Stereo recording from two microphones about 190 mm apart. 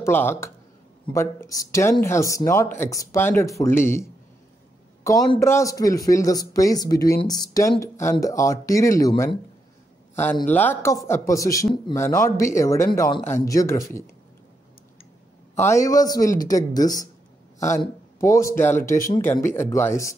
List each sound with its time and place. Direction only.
0.0 s a man's voice: 10° left (ahead or behind)
10.3 s a man's voice: 10° left (ahead or behind)
15.6 s a man's voice: 15° left (ahead or behind)